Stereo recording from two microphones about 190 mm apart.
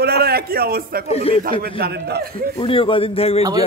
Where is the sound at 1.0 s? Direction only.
30° left (ahead or behind).